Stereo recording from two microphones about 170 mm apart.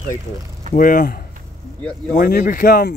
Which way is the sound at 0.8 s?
55° left (ahead or behind).